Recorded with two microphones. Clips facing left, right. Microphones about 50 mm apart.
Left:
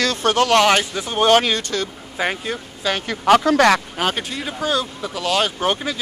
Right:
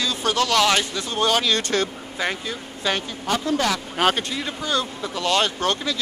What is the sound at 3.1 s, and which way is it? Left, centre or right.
Speech, left.